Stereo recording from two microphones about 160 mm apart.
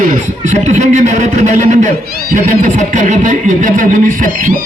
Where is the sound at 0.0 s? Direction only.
55° right (ahead or behind).